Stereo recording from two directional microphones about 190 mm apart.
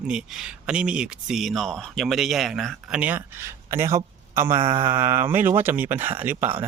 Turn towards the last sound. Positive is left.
turn(degrees=-10)  # may be behind; listen again after turning